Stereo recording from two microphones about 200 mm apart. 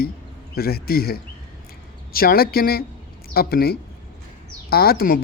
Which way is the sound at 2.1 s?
50° left (ahead or behind).